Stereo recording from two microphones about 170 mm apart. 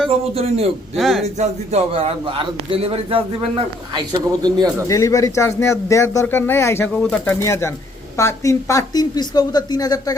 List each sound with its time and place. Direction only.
0.3 s a man's voice: 35° right (ahead or behind)
0.9 s speech: centre (ahead or behind)
1.4 s a man's voice: 40° right (ahead or behind)
4.9 s a man's voice: 20° left (ahead or behind)